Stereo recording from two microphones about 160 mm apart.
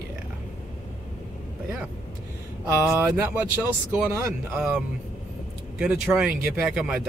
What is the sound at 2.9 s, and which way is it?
Speech, 15° right (ahead or behind).